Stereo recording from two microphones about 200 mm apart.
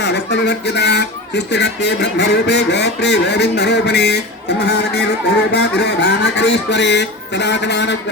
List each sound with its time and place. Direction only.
0.0 s speech: 55° left (ahead or behind)
5.5 s speech: 55° left (ahead or behind)